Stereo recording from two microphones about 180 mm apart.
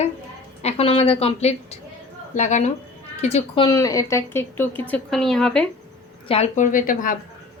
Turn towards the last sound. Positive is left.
turn(degrees=50)  # may be behind; listen again after turning